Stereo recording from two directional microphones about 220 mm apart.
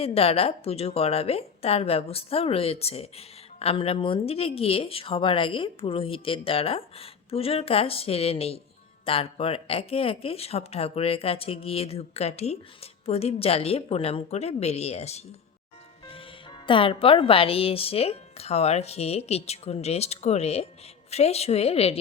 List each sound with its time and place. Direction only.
0.0 s a woman's voice: 25° left (ahead or behind)